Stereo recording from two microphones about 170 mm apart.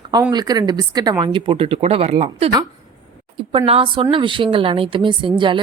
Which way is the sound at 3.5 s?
35° right (ahead or behind).